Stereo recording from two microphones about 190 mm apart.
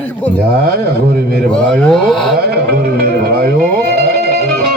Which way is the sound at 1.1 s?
55° right (ahead or behind).